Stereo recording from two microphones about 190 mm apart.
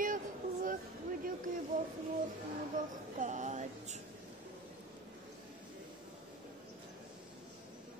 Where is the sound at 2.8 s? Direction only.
45° right (ahead or behind).